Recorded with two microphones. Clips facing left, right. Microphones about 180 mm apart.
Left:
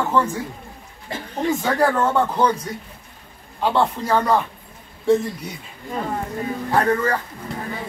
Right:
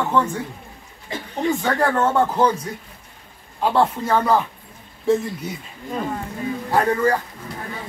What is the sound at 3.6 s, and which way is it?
Speech, centre (ahead or behind).